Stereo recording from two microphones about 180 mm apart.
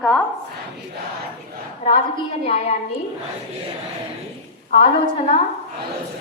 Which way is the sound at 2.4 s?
35° left (ahead or behind).